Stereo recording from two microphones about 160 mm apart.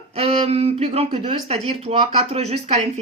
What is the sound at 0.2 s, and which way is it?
Speech, 40° right (ahead or behind).